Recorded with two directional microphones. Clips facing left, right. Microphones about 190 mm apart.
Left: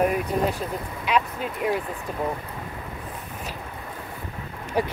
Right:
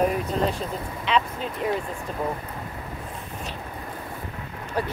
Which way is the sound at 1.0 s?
5° left (ahead or behind).